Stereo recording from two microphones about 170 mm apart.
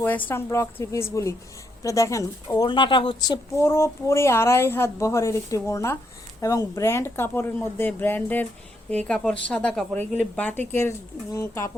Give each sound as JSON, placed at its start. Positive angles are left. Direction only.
{"t": 0.0, "sound": "speech", "side_deg": 10}